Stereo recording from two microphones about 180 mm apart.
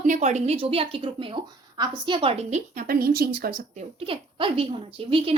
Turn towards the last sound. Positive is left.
turn(degrees=-30)  # may be behind; listen again after turning